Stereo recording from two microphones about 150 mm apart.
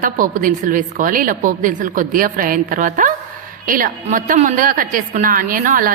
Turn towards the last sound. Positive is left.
turn(degrees=-60)  # may be behind; listen again after turning